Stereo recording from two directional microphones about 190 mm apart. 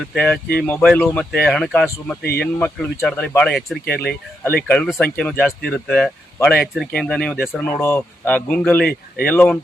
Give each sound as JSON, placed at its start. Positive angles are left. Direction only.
{"t": 0.1, "sound": "speech", "side_deg": 5}
{"t": 7.6, "sound": "speech", "side_deg": 10}
{"t": 8.8, "sound": "speech", "side_deg": 55}
{"t": 9.2, "sound": "speech", "side_deg": 10}